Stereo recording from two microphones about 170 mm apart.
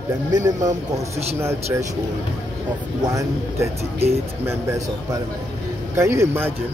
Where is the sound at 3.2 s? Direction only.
15° right (ahead or behind).